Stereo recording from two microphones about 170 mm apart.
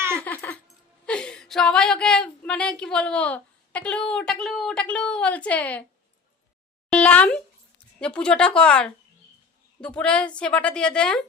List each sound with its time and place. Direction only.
0.2 s laughter: 10° left (ahead or behind)
1.0 s a woman's voice: 5° left (ahead or behind)
6.9 s a woman's voice: 5° left (ahead or behind)